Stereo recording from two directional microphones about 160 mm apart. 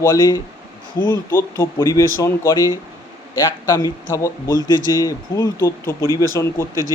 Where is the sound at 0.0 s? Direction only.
20° left (ahead or behind).